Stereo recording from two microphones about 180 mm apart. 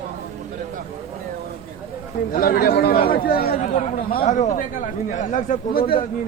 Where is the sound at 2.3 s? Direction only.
55° left (ahead or behind).